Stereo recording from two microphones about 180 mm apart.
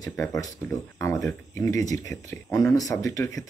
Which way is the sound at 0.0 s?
15° left (ahead or behind).